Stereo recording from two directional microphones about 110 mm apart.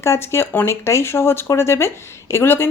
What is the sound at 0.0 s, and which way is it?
Speech, 25° left (ahead or behind).